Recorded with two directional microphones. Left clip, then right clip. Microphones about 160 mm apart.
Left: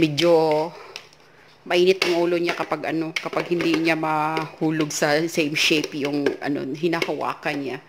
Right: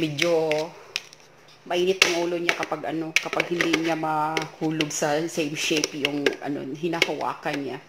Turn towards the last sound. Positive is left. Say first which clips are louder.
# left 2 dB
turn(degrees=30)  # may be behind; listen again after turning